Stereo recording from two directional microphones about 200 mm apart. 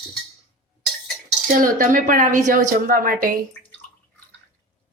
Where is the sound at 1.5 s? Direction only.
45° right (ahead or behind).